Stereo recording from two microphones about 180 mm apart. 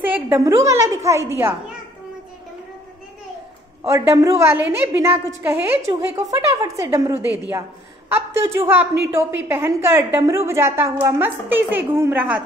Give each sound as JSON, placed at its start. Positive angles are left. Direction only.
{"t": 0.1, "sound": "a woman's voice", "side_deg": -15}
{"t": 3.8, "sound": "a woman's voice", "side_deg": -15}